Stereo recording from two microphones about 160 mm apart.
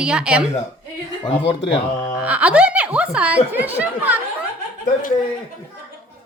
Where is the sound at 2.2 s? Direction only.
10° right (ahead or behind).